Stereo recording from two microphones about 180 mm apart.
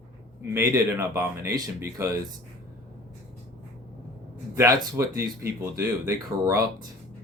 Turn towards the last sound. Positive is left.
turn(degrees=-15)  # may be behind; listen again after turning